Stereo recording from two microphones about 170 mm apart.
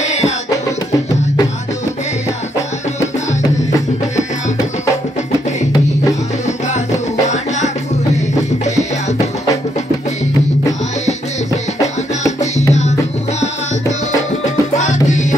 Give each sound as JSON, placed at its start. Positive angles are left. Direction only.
{"t": 12.3, "sound": "music", "side_deg": 40}
{"t": 14.4, "sound": "music", "side_deg": 45}